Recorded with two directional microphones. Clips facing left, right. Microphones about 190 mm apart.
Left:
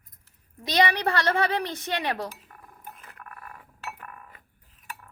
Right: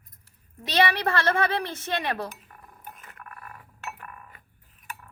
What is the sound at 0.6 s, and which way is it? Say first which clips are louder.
A woman's voice: even; 15° left (ahead or behind).